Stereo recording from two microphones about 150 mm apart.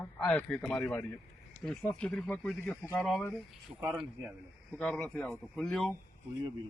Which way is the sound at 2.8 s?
15° left (ahead or behind).